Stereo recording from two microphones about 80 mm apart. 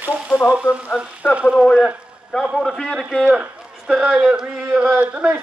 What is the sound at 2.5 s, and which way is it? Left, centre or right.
Speech, centre.